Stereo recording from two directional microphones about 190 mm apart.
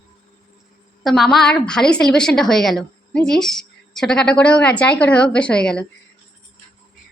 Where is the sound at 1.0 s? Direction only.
Centre (ahead or behind).